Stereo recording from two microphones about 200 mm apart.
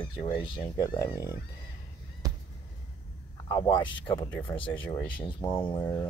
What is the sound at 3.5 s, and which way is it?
Speech, 20° left (ahead or behind).